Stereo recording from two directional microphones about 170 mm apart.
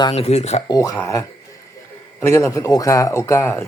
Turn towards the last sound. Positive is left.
turn(degrees=15)  # may be behind; listen again after turning